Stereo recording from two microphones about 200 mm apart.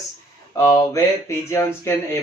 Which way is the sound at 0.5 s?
15° left (ahead or behind).